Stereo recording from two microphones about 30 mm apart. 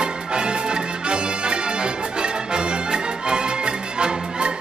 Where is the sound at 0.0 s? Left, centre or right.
Right.